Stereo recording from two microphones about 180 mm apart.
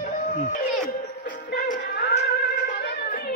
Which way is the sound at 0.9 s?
60° left (ahead or behind).